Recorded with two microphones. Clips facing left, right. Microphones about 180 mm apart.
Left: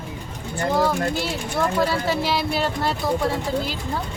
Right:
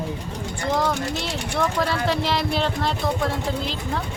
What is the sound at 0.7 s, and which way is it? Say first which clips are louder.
Speech: left 2 dB; 5° left (ahead or behind).